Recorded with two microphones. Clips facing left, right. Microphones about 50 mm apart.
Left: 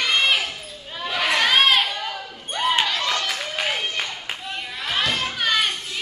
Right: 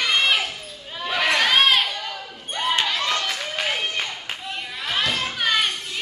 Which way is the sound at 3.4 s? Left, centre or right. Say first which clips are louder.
Even; centre.